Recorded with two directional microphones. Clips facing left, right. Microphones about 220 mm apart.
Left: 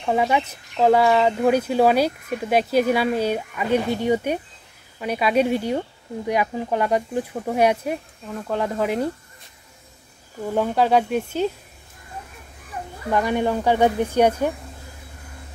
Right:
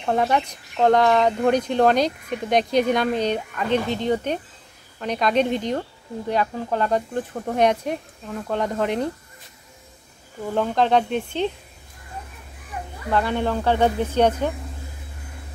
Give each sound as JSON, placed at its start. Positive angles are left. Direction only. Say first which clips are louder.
{"t": 0.0, "sound": "speech", "louder": "even", "side_deg": 5}
{"t": 10.5, "sound": "speech", "louder": "left 1 dB", "side_deg": 10}
{"t": 13.1, "sound": "speech", "louder": "left 1 dB", "side_deg": 15}